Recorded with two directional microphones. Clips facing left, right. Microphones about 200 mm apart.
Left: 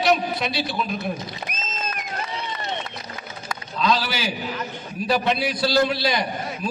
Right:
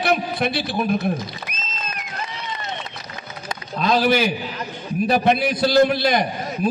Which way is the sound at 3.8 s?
55° right (ahead or behind).